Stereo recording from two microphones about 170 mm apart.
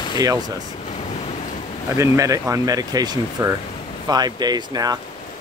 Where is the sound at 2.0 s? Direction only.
20° right (ahead or behind).